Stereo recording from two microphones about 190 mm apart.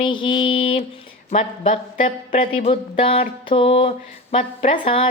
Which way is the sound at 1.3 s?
30° left (ahead or behind).